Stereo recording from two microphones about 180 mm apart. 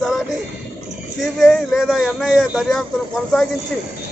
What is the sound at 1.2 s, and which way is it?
Speech, centre (ahead or behind).